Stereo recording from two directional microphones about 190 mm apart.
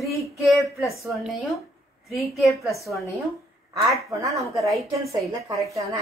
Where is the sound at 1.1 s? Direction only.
Centre (ahead or behind).